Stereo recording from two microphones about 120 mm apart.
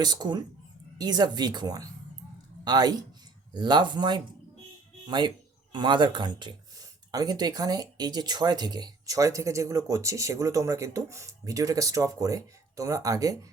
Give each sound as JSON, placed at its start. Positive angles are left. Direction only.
{"t": 0.0, "sound": "speech", "side_deg": -35}